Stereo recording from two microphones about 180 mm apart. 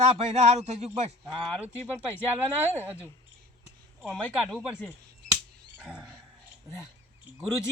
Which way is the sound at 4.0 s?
Centre (ahead or behind).